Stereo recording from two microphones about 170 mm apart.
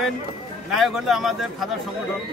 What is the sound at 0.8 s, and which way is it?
Speech, centre (ahead or behind).